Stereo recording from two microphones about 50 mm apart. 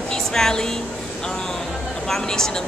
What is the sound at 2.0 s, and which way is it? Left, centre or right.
Speech, centre.